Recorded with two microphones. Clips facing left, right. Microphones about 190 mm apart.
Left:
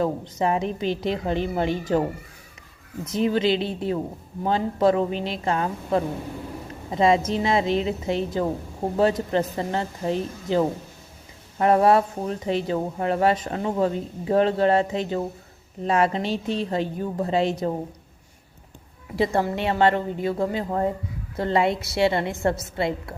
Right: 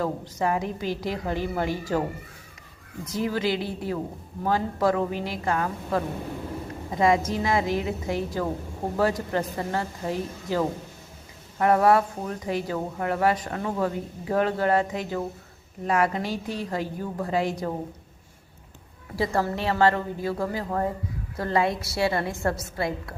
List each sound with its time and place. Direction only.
0.0 s speech: 20° left (ahead or behind)
19.1 s speech: 20° left (ahead or behind)